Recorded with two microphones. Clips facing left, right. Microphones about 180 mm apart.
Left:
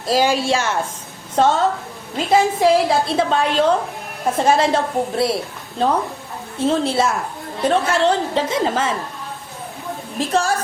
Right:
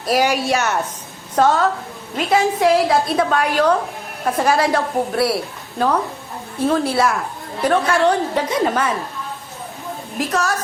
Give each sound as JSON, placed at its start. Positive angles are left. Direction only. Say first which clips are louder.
{"t": 0.0, "sound": "a woman's voice", "louder": "even", "side_deg": 25}
{"t": 2.6, "sound": "a woman's voice", "louder": "even", "side_deg": 25}
{"t": 10.2, "sound": "a woman's voice", "louder": "left 2 dB", "side_deg": 30}